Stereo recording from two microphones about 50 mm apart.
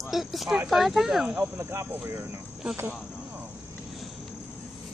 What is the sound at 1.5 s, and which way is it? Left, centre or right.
Speech, right.